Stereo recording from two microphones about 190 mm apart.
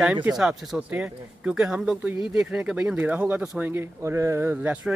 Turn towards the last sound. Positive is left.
turn(degrees=-5)  # may be behind; listen again after turning